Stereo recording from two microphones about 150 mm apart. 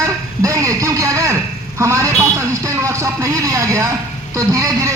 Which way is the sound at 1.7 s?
20° right (ahead or behind).